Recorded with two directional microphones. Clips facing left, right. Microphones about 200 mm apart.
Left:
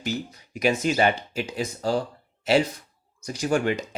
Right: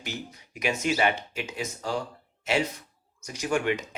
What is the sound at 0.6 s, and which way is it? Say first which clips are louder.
Speech: left 4 dB; 35° left (ahead or behind).